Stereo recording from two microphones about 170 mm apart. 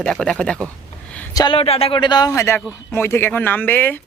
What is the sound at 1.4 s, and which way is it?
Speech, 30° left (ahead or behind).